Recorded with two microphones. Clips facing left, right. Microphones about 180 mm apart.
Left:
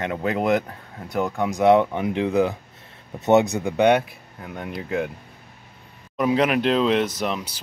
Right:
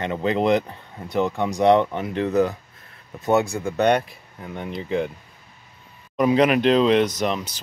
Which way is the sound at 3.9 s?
5° left (ahead or behind).